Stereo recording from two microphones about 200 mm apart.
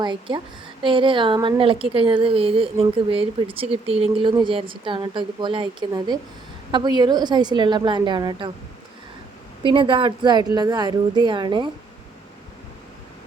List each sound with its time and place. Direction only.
0.0 s a woman's voice: 25° right (ahead or behind)
9.6 s a woman's voice: 25° right (ahead or behind)